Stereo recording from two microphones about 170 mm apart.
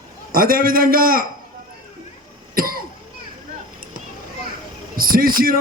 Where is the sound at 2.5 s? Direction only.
60° right (ahead or behind).